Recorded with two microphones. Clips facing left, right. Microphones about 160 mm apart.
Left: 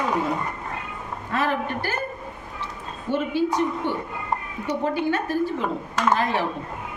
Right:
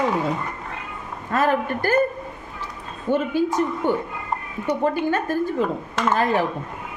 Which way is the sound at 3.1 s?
45° right (ahead or behind).